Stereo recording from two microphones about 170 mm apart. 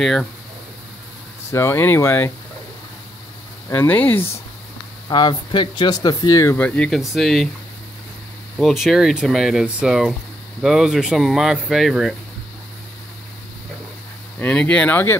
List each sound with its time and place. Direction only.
0.0 s speech: 5° left (ahead or behind)
1.5 s speech: 15° left (ahead or behind)
3.7 s speech: 10° left (ahead or behind)
5.1 s speech: 25° left (ahead or behind); by 7.4 s centre (ahead or behind)
8.5 s speech: centre (ahead or behind)
14.4 s speech: 5° left (ahead or behind)